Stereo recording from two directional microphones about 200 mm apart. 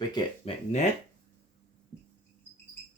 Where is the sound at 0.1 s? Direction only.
20° left (ahead or behind).